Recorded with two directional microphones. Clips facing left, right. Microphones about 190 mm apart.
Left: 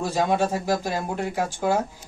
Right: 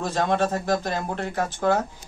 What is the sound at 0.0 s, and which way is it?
Speech, 10° left (ahead or behind).